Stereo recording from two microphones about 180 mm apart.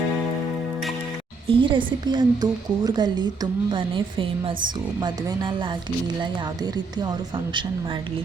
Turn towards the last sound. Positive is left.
turn(degrees=-25)  # may be behind; listen again after turning